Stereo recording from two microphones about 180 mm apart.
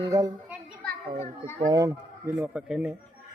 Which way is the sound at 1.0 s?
45° right (ahead or behind).